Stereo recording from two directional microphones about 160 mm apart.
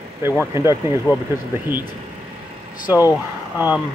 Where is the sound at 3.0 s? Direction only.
20° left (ahead or behind).